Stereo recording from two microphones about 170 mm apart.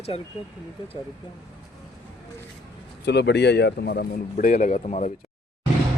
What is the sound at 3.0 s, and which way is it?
Speech, 80° left.